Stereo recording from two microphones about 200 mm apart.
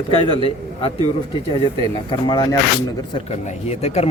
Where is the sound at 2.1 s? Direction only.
20° left (ahead or behind).